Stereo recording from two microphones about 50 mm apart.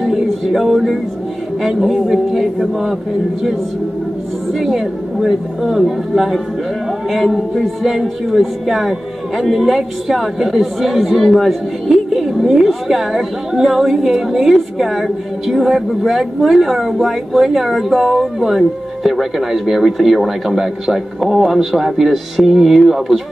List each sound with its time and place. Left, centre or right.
0.0 s music: centre
1.6 s speech: centre
4.5 s speech: centre